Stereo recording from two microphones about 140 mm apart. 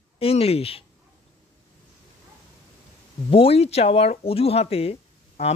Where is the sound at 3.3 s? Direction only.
45° left (ahead or behind).